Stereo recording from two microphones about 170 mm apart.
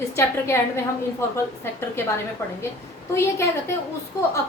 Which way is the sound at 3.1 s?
15° left (ahead or behind).